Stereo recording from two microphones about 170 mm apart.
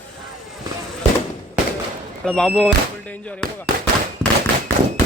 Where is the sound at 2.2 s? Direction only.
5° left (ahead or behind).